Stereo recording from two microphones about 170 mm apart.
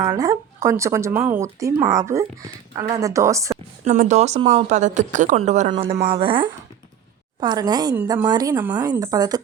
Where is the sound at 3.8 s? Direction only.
50° right (ahead or behind).